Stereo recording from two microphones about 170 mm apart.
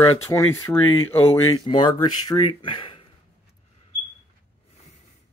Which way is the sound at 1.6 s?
25° left (ahead or behind).